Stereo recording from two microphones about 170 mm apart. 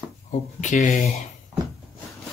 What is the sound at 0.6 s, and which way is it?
Speech, 45° left (ahead or behind).